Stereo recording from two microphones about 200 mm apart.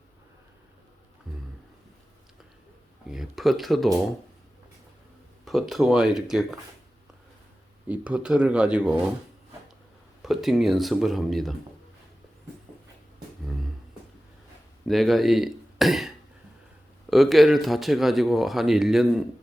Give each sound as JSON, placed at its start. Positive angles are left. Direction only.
{"t": 1.3, "sound": "a sound", "side_deg": -5}
{"t": 3.1, "sound": "speech", "side_deg": 0}
{"t": 5.5, "sound": "speech", "side_deg": 0}
{"t": 7.9, "sound": "speech", "side_deg": -5}
{"t": 10.2, "sound": "speech", "side_deg": 0}
{"t": 14.8, "sound": "speech", "side_deg": 0}